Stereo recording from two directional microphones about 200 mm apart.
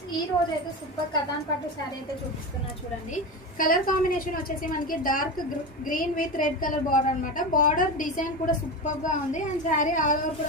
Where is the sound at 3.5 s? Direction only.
45° left (ahead or behind).